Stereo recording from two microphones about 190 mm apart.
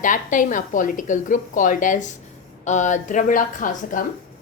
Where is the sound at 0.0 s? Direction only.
45° left (ahead or behind).